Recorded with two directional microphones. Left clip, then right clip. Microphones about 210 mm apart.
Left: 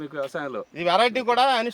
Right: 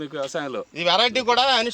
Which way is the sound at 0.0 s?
40° right (ahead or behind).